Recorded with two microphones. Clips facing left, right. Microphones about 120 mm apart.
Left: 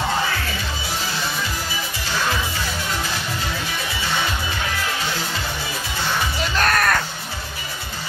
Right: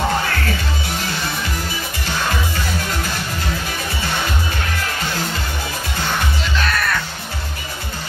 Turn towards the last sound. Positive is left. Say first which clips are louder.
# left 2 dB
turn(degrees=45)  # may be behind; listen again after turning